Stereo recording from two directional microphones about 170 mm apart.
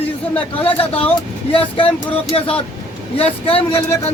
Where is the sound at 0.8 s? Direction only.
35° left (ahead or behind).